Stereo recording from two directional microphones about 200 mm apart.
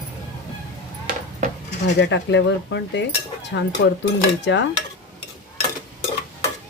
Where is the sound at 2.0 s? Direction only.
60° left (ahead or behind).